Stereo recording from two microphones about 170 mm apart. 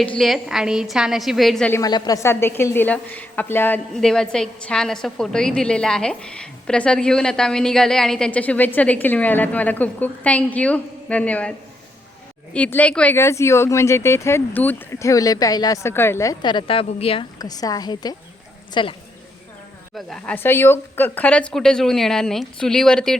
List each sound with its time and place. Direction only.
0.2 s speech: centre (ahead or behind)
1.7 s a woman's voice: 25° left (ahead or behind); by 11.5 s 5° left (ahead or behind)
12.5 s a woman's voice: 10° left (ahead or behind); by 17.2 s 35° left (ahead or behind)
17.4 s a woman's voice: 20° left (ahead or behind)
20.1 s speech: 5° left (ahead or behind)